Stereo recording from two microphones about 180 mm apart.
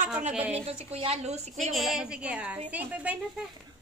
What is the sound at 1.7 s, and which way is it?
A woman's voice, centre (ahead or behind).